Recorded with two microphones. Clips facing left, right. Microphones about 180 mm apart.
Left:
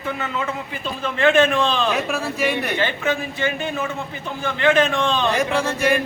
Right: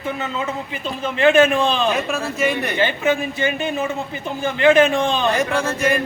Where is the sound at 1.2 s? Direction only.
15° right (ahead or behind).